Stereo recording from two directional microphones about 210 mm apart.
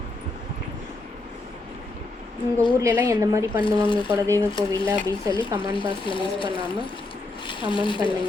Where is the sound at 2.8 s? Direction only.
15° right (ahead or behind).